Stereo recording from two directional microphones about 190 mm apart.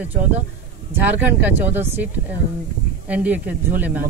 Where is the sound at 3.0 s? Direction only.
10° right (ahead or behind).